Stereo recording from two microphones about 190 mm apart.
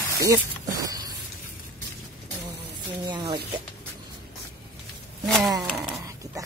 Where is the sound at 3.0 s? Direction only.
25° right (ahead or behind).